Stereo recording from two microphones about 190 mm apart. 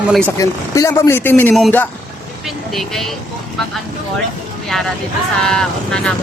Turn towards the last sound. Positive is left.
turn(degrees=5)  # may be behind; listen again after turning